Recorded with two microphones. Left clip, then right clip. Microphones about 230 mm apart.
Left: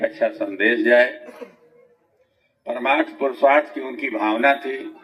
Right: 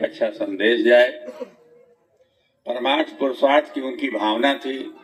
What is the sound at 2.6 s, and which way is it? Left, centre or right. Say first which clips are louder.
A man's voice: left 1 dB; right.